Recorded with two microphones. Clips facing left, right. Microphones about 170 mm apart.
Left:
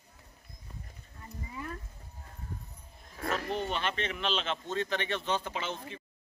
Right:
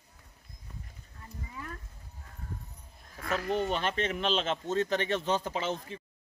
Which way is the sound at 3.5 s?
40° right (ahead or behind).